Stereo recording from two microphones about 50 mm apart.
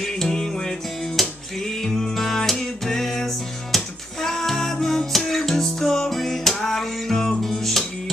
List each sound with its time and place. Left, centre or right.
0.0 s music: centre